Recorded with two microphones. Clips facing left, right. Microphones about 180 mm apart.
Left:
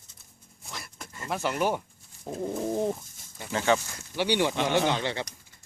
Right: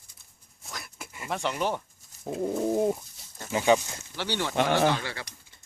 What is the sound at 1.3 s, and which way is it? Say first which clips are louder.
Speech: left 2 dB; 5° left (ahead or behind).